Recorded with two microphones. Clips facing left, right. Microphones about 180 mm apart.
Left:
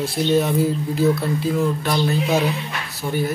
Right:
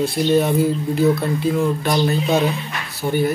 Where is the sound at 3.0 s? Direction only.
15° right (ahead or behind).